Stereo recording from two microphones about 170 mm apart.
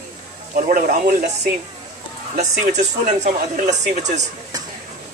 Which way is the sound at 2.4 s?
45° right (ahead or behind).